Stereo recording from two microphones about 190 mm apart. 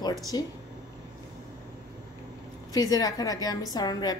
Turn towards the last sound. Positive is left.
turn(degrees=20)  # may be behind; listen again after turning